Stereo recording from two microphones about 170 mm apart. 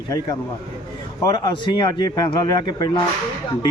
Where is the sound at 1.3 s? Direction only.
25° left (ahead or behind).